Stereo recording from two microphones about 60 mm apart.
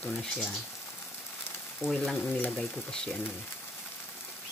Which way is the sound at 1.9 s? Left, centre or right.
Centre.